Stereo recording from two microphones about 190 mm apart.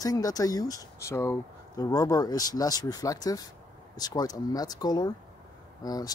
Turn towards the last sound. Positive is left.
turn(degrees=20)  # may be behind; listen again after turning